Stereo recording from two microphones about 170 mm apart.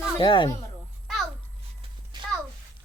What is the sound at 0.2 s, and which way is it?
Speech, 30° left (ahead or behind).